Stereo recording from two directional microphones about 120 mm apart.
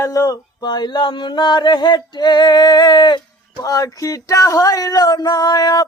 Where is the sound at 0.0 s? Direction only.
25° left (ahead or behind).